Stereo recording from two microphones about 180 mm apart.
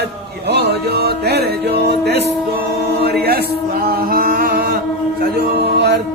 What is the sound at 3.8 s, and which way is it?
Music, 55° right (ahead or behind).